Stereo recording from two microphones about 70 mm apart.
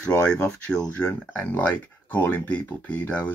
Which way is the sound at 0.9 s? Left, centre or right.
Left.